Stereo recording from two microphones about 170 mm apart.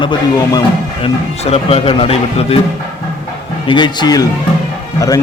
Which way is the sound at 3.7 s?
25° left (ahead or behind).